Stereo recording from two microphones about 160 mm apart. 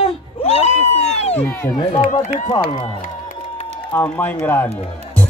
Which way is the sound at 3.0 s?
50° left (ahead or behind).